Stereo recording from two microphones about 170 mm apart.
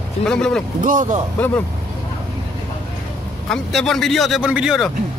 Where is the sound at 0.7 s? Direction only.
50° right (ahead or behind).